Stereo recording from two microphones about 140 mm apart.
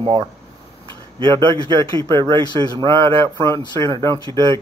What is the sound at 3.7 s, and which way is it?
Speech, 30° right (ahead or behind).